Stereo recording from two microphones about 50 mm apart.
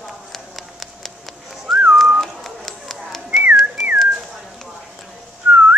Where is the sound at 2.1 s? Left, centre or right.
Centre.